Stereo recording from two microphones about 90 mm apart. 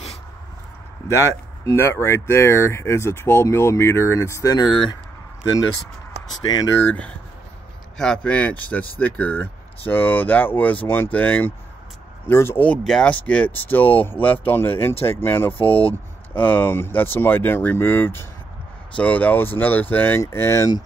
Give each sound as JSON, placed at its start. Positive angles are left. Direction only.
{"t": 1.7, "sound": "speech", "side_deg": 30}
{"t": 6.8, "sound": "speech", "side_deg": 20}
{"t": 8.0, "sound": "speech", "side_deg": 10}
{"t": 15.6, "sound": "speech", "side_deg": 90}
{"t": 15.9, "sound": "speech", "side_deg": 20}